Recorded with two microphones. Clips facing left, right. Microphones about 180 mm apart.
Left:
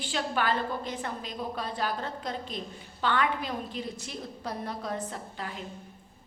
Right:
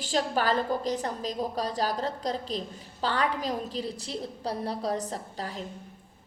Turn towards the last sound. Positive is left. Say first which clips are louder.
# right 2 dB
turn(degrees=-40)  # may be behind; listen again after turning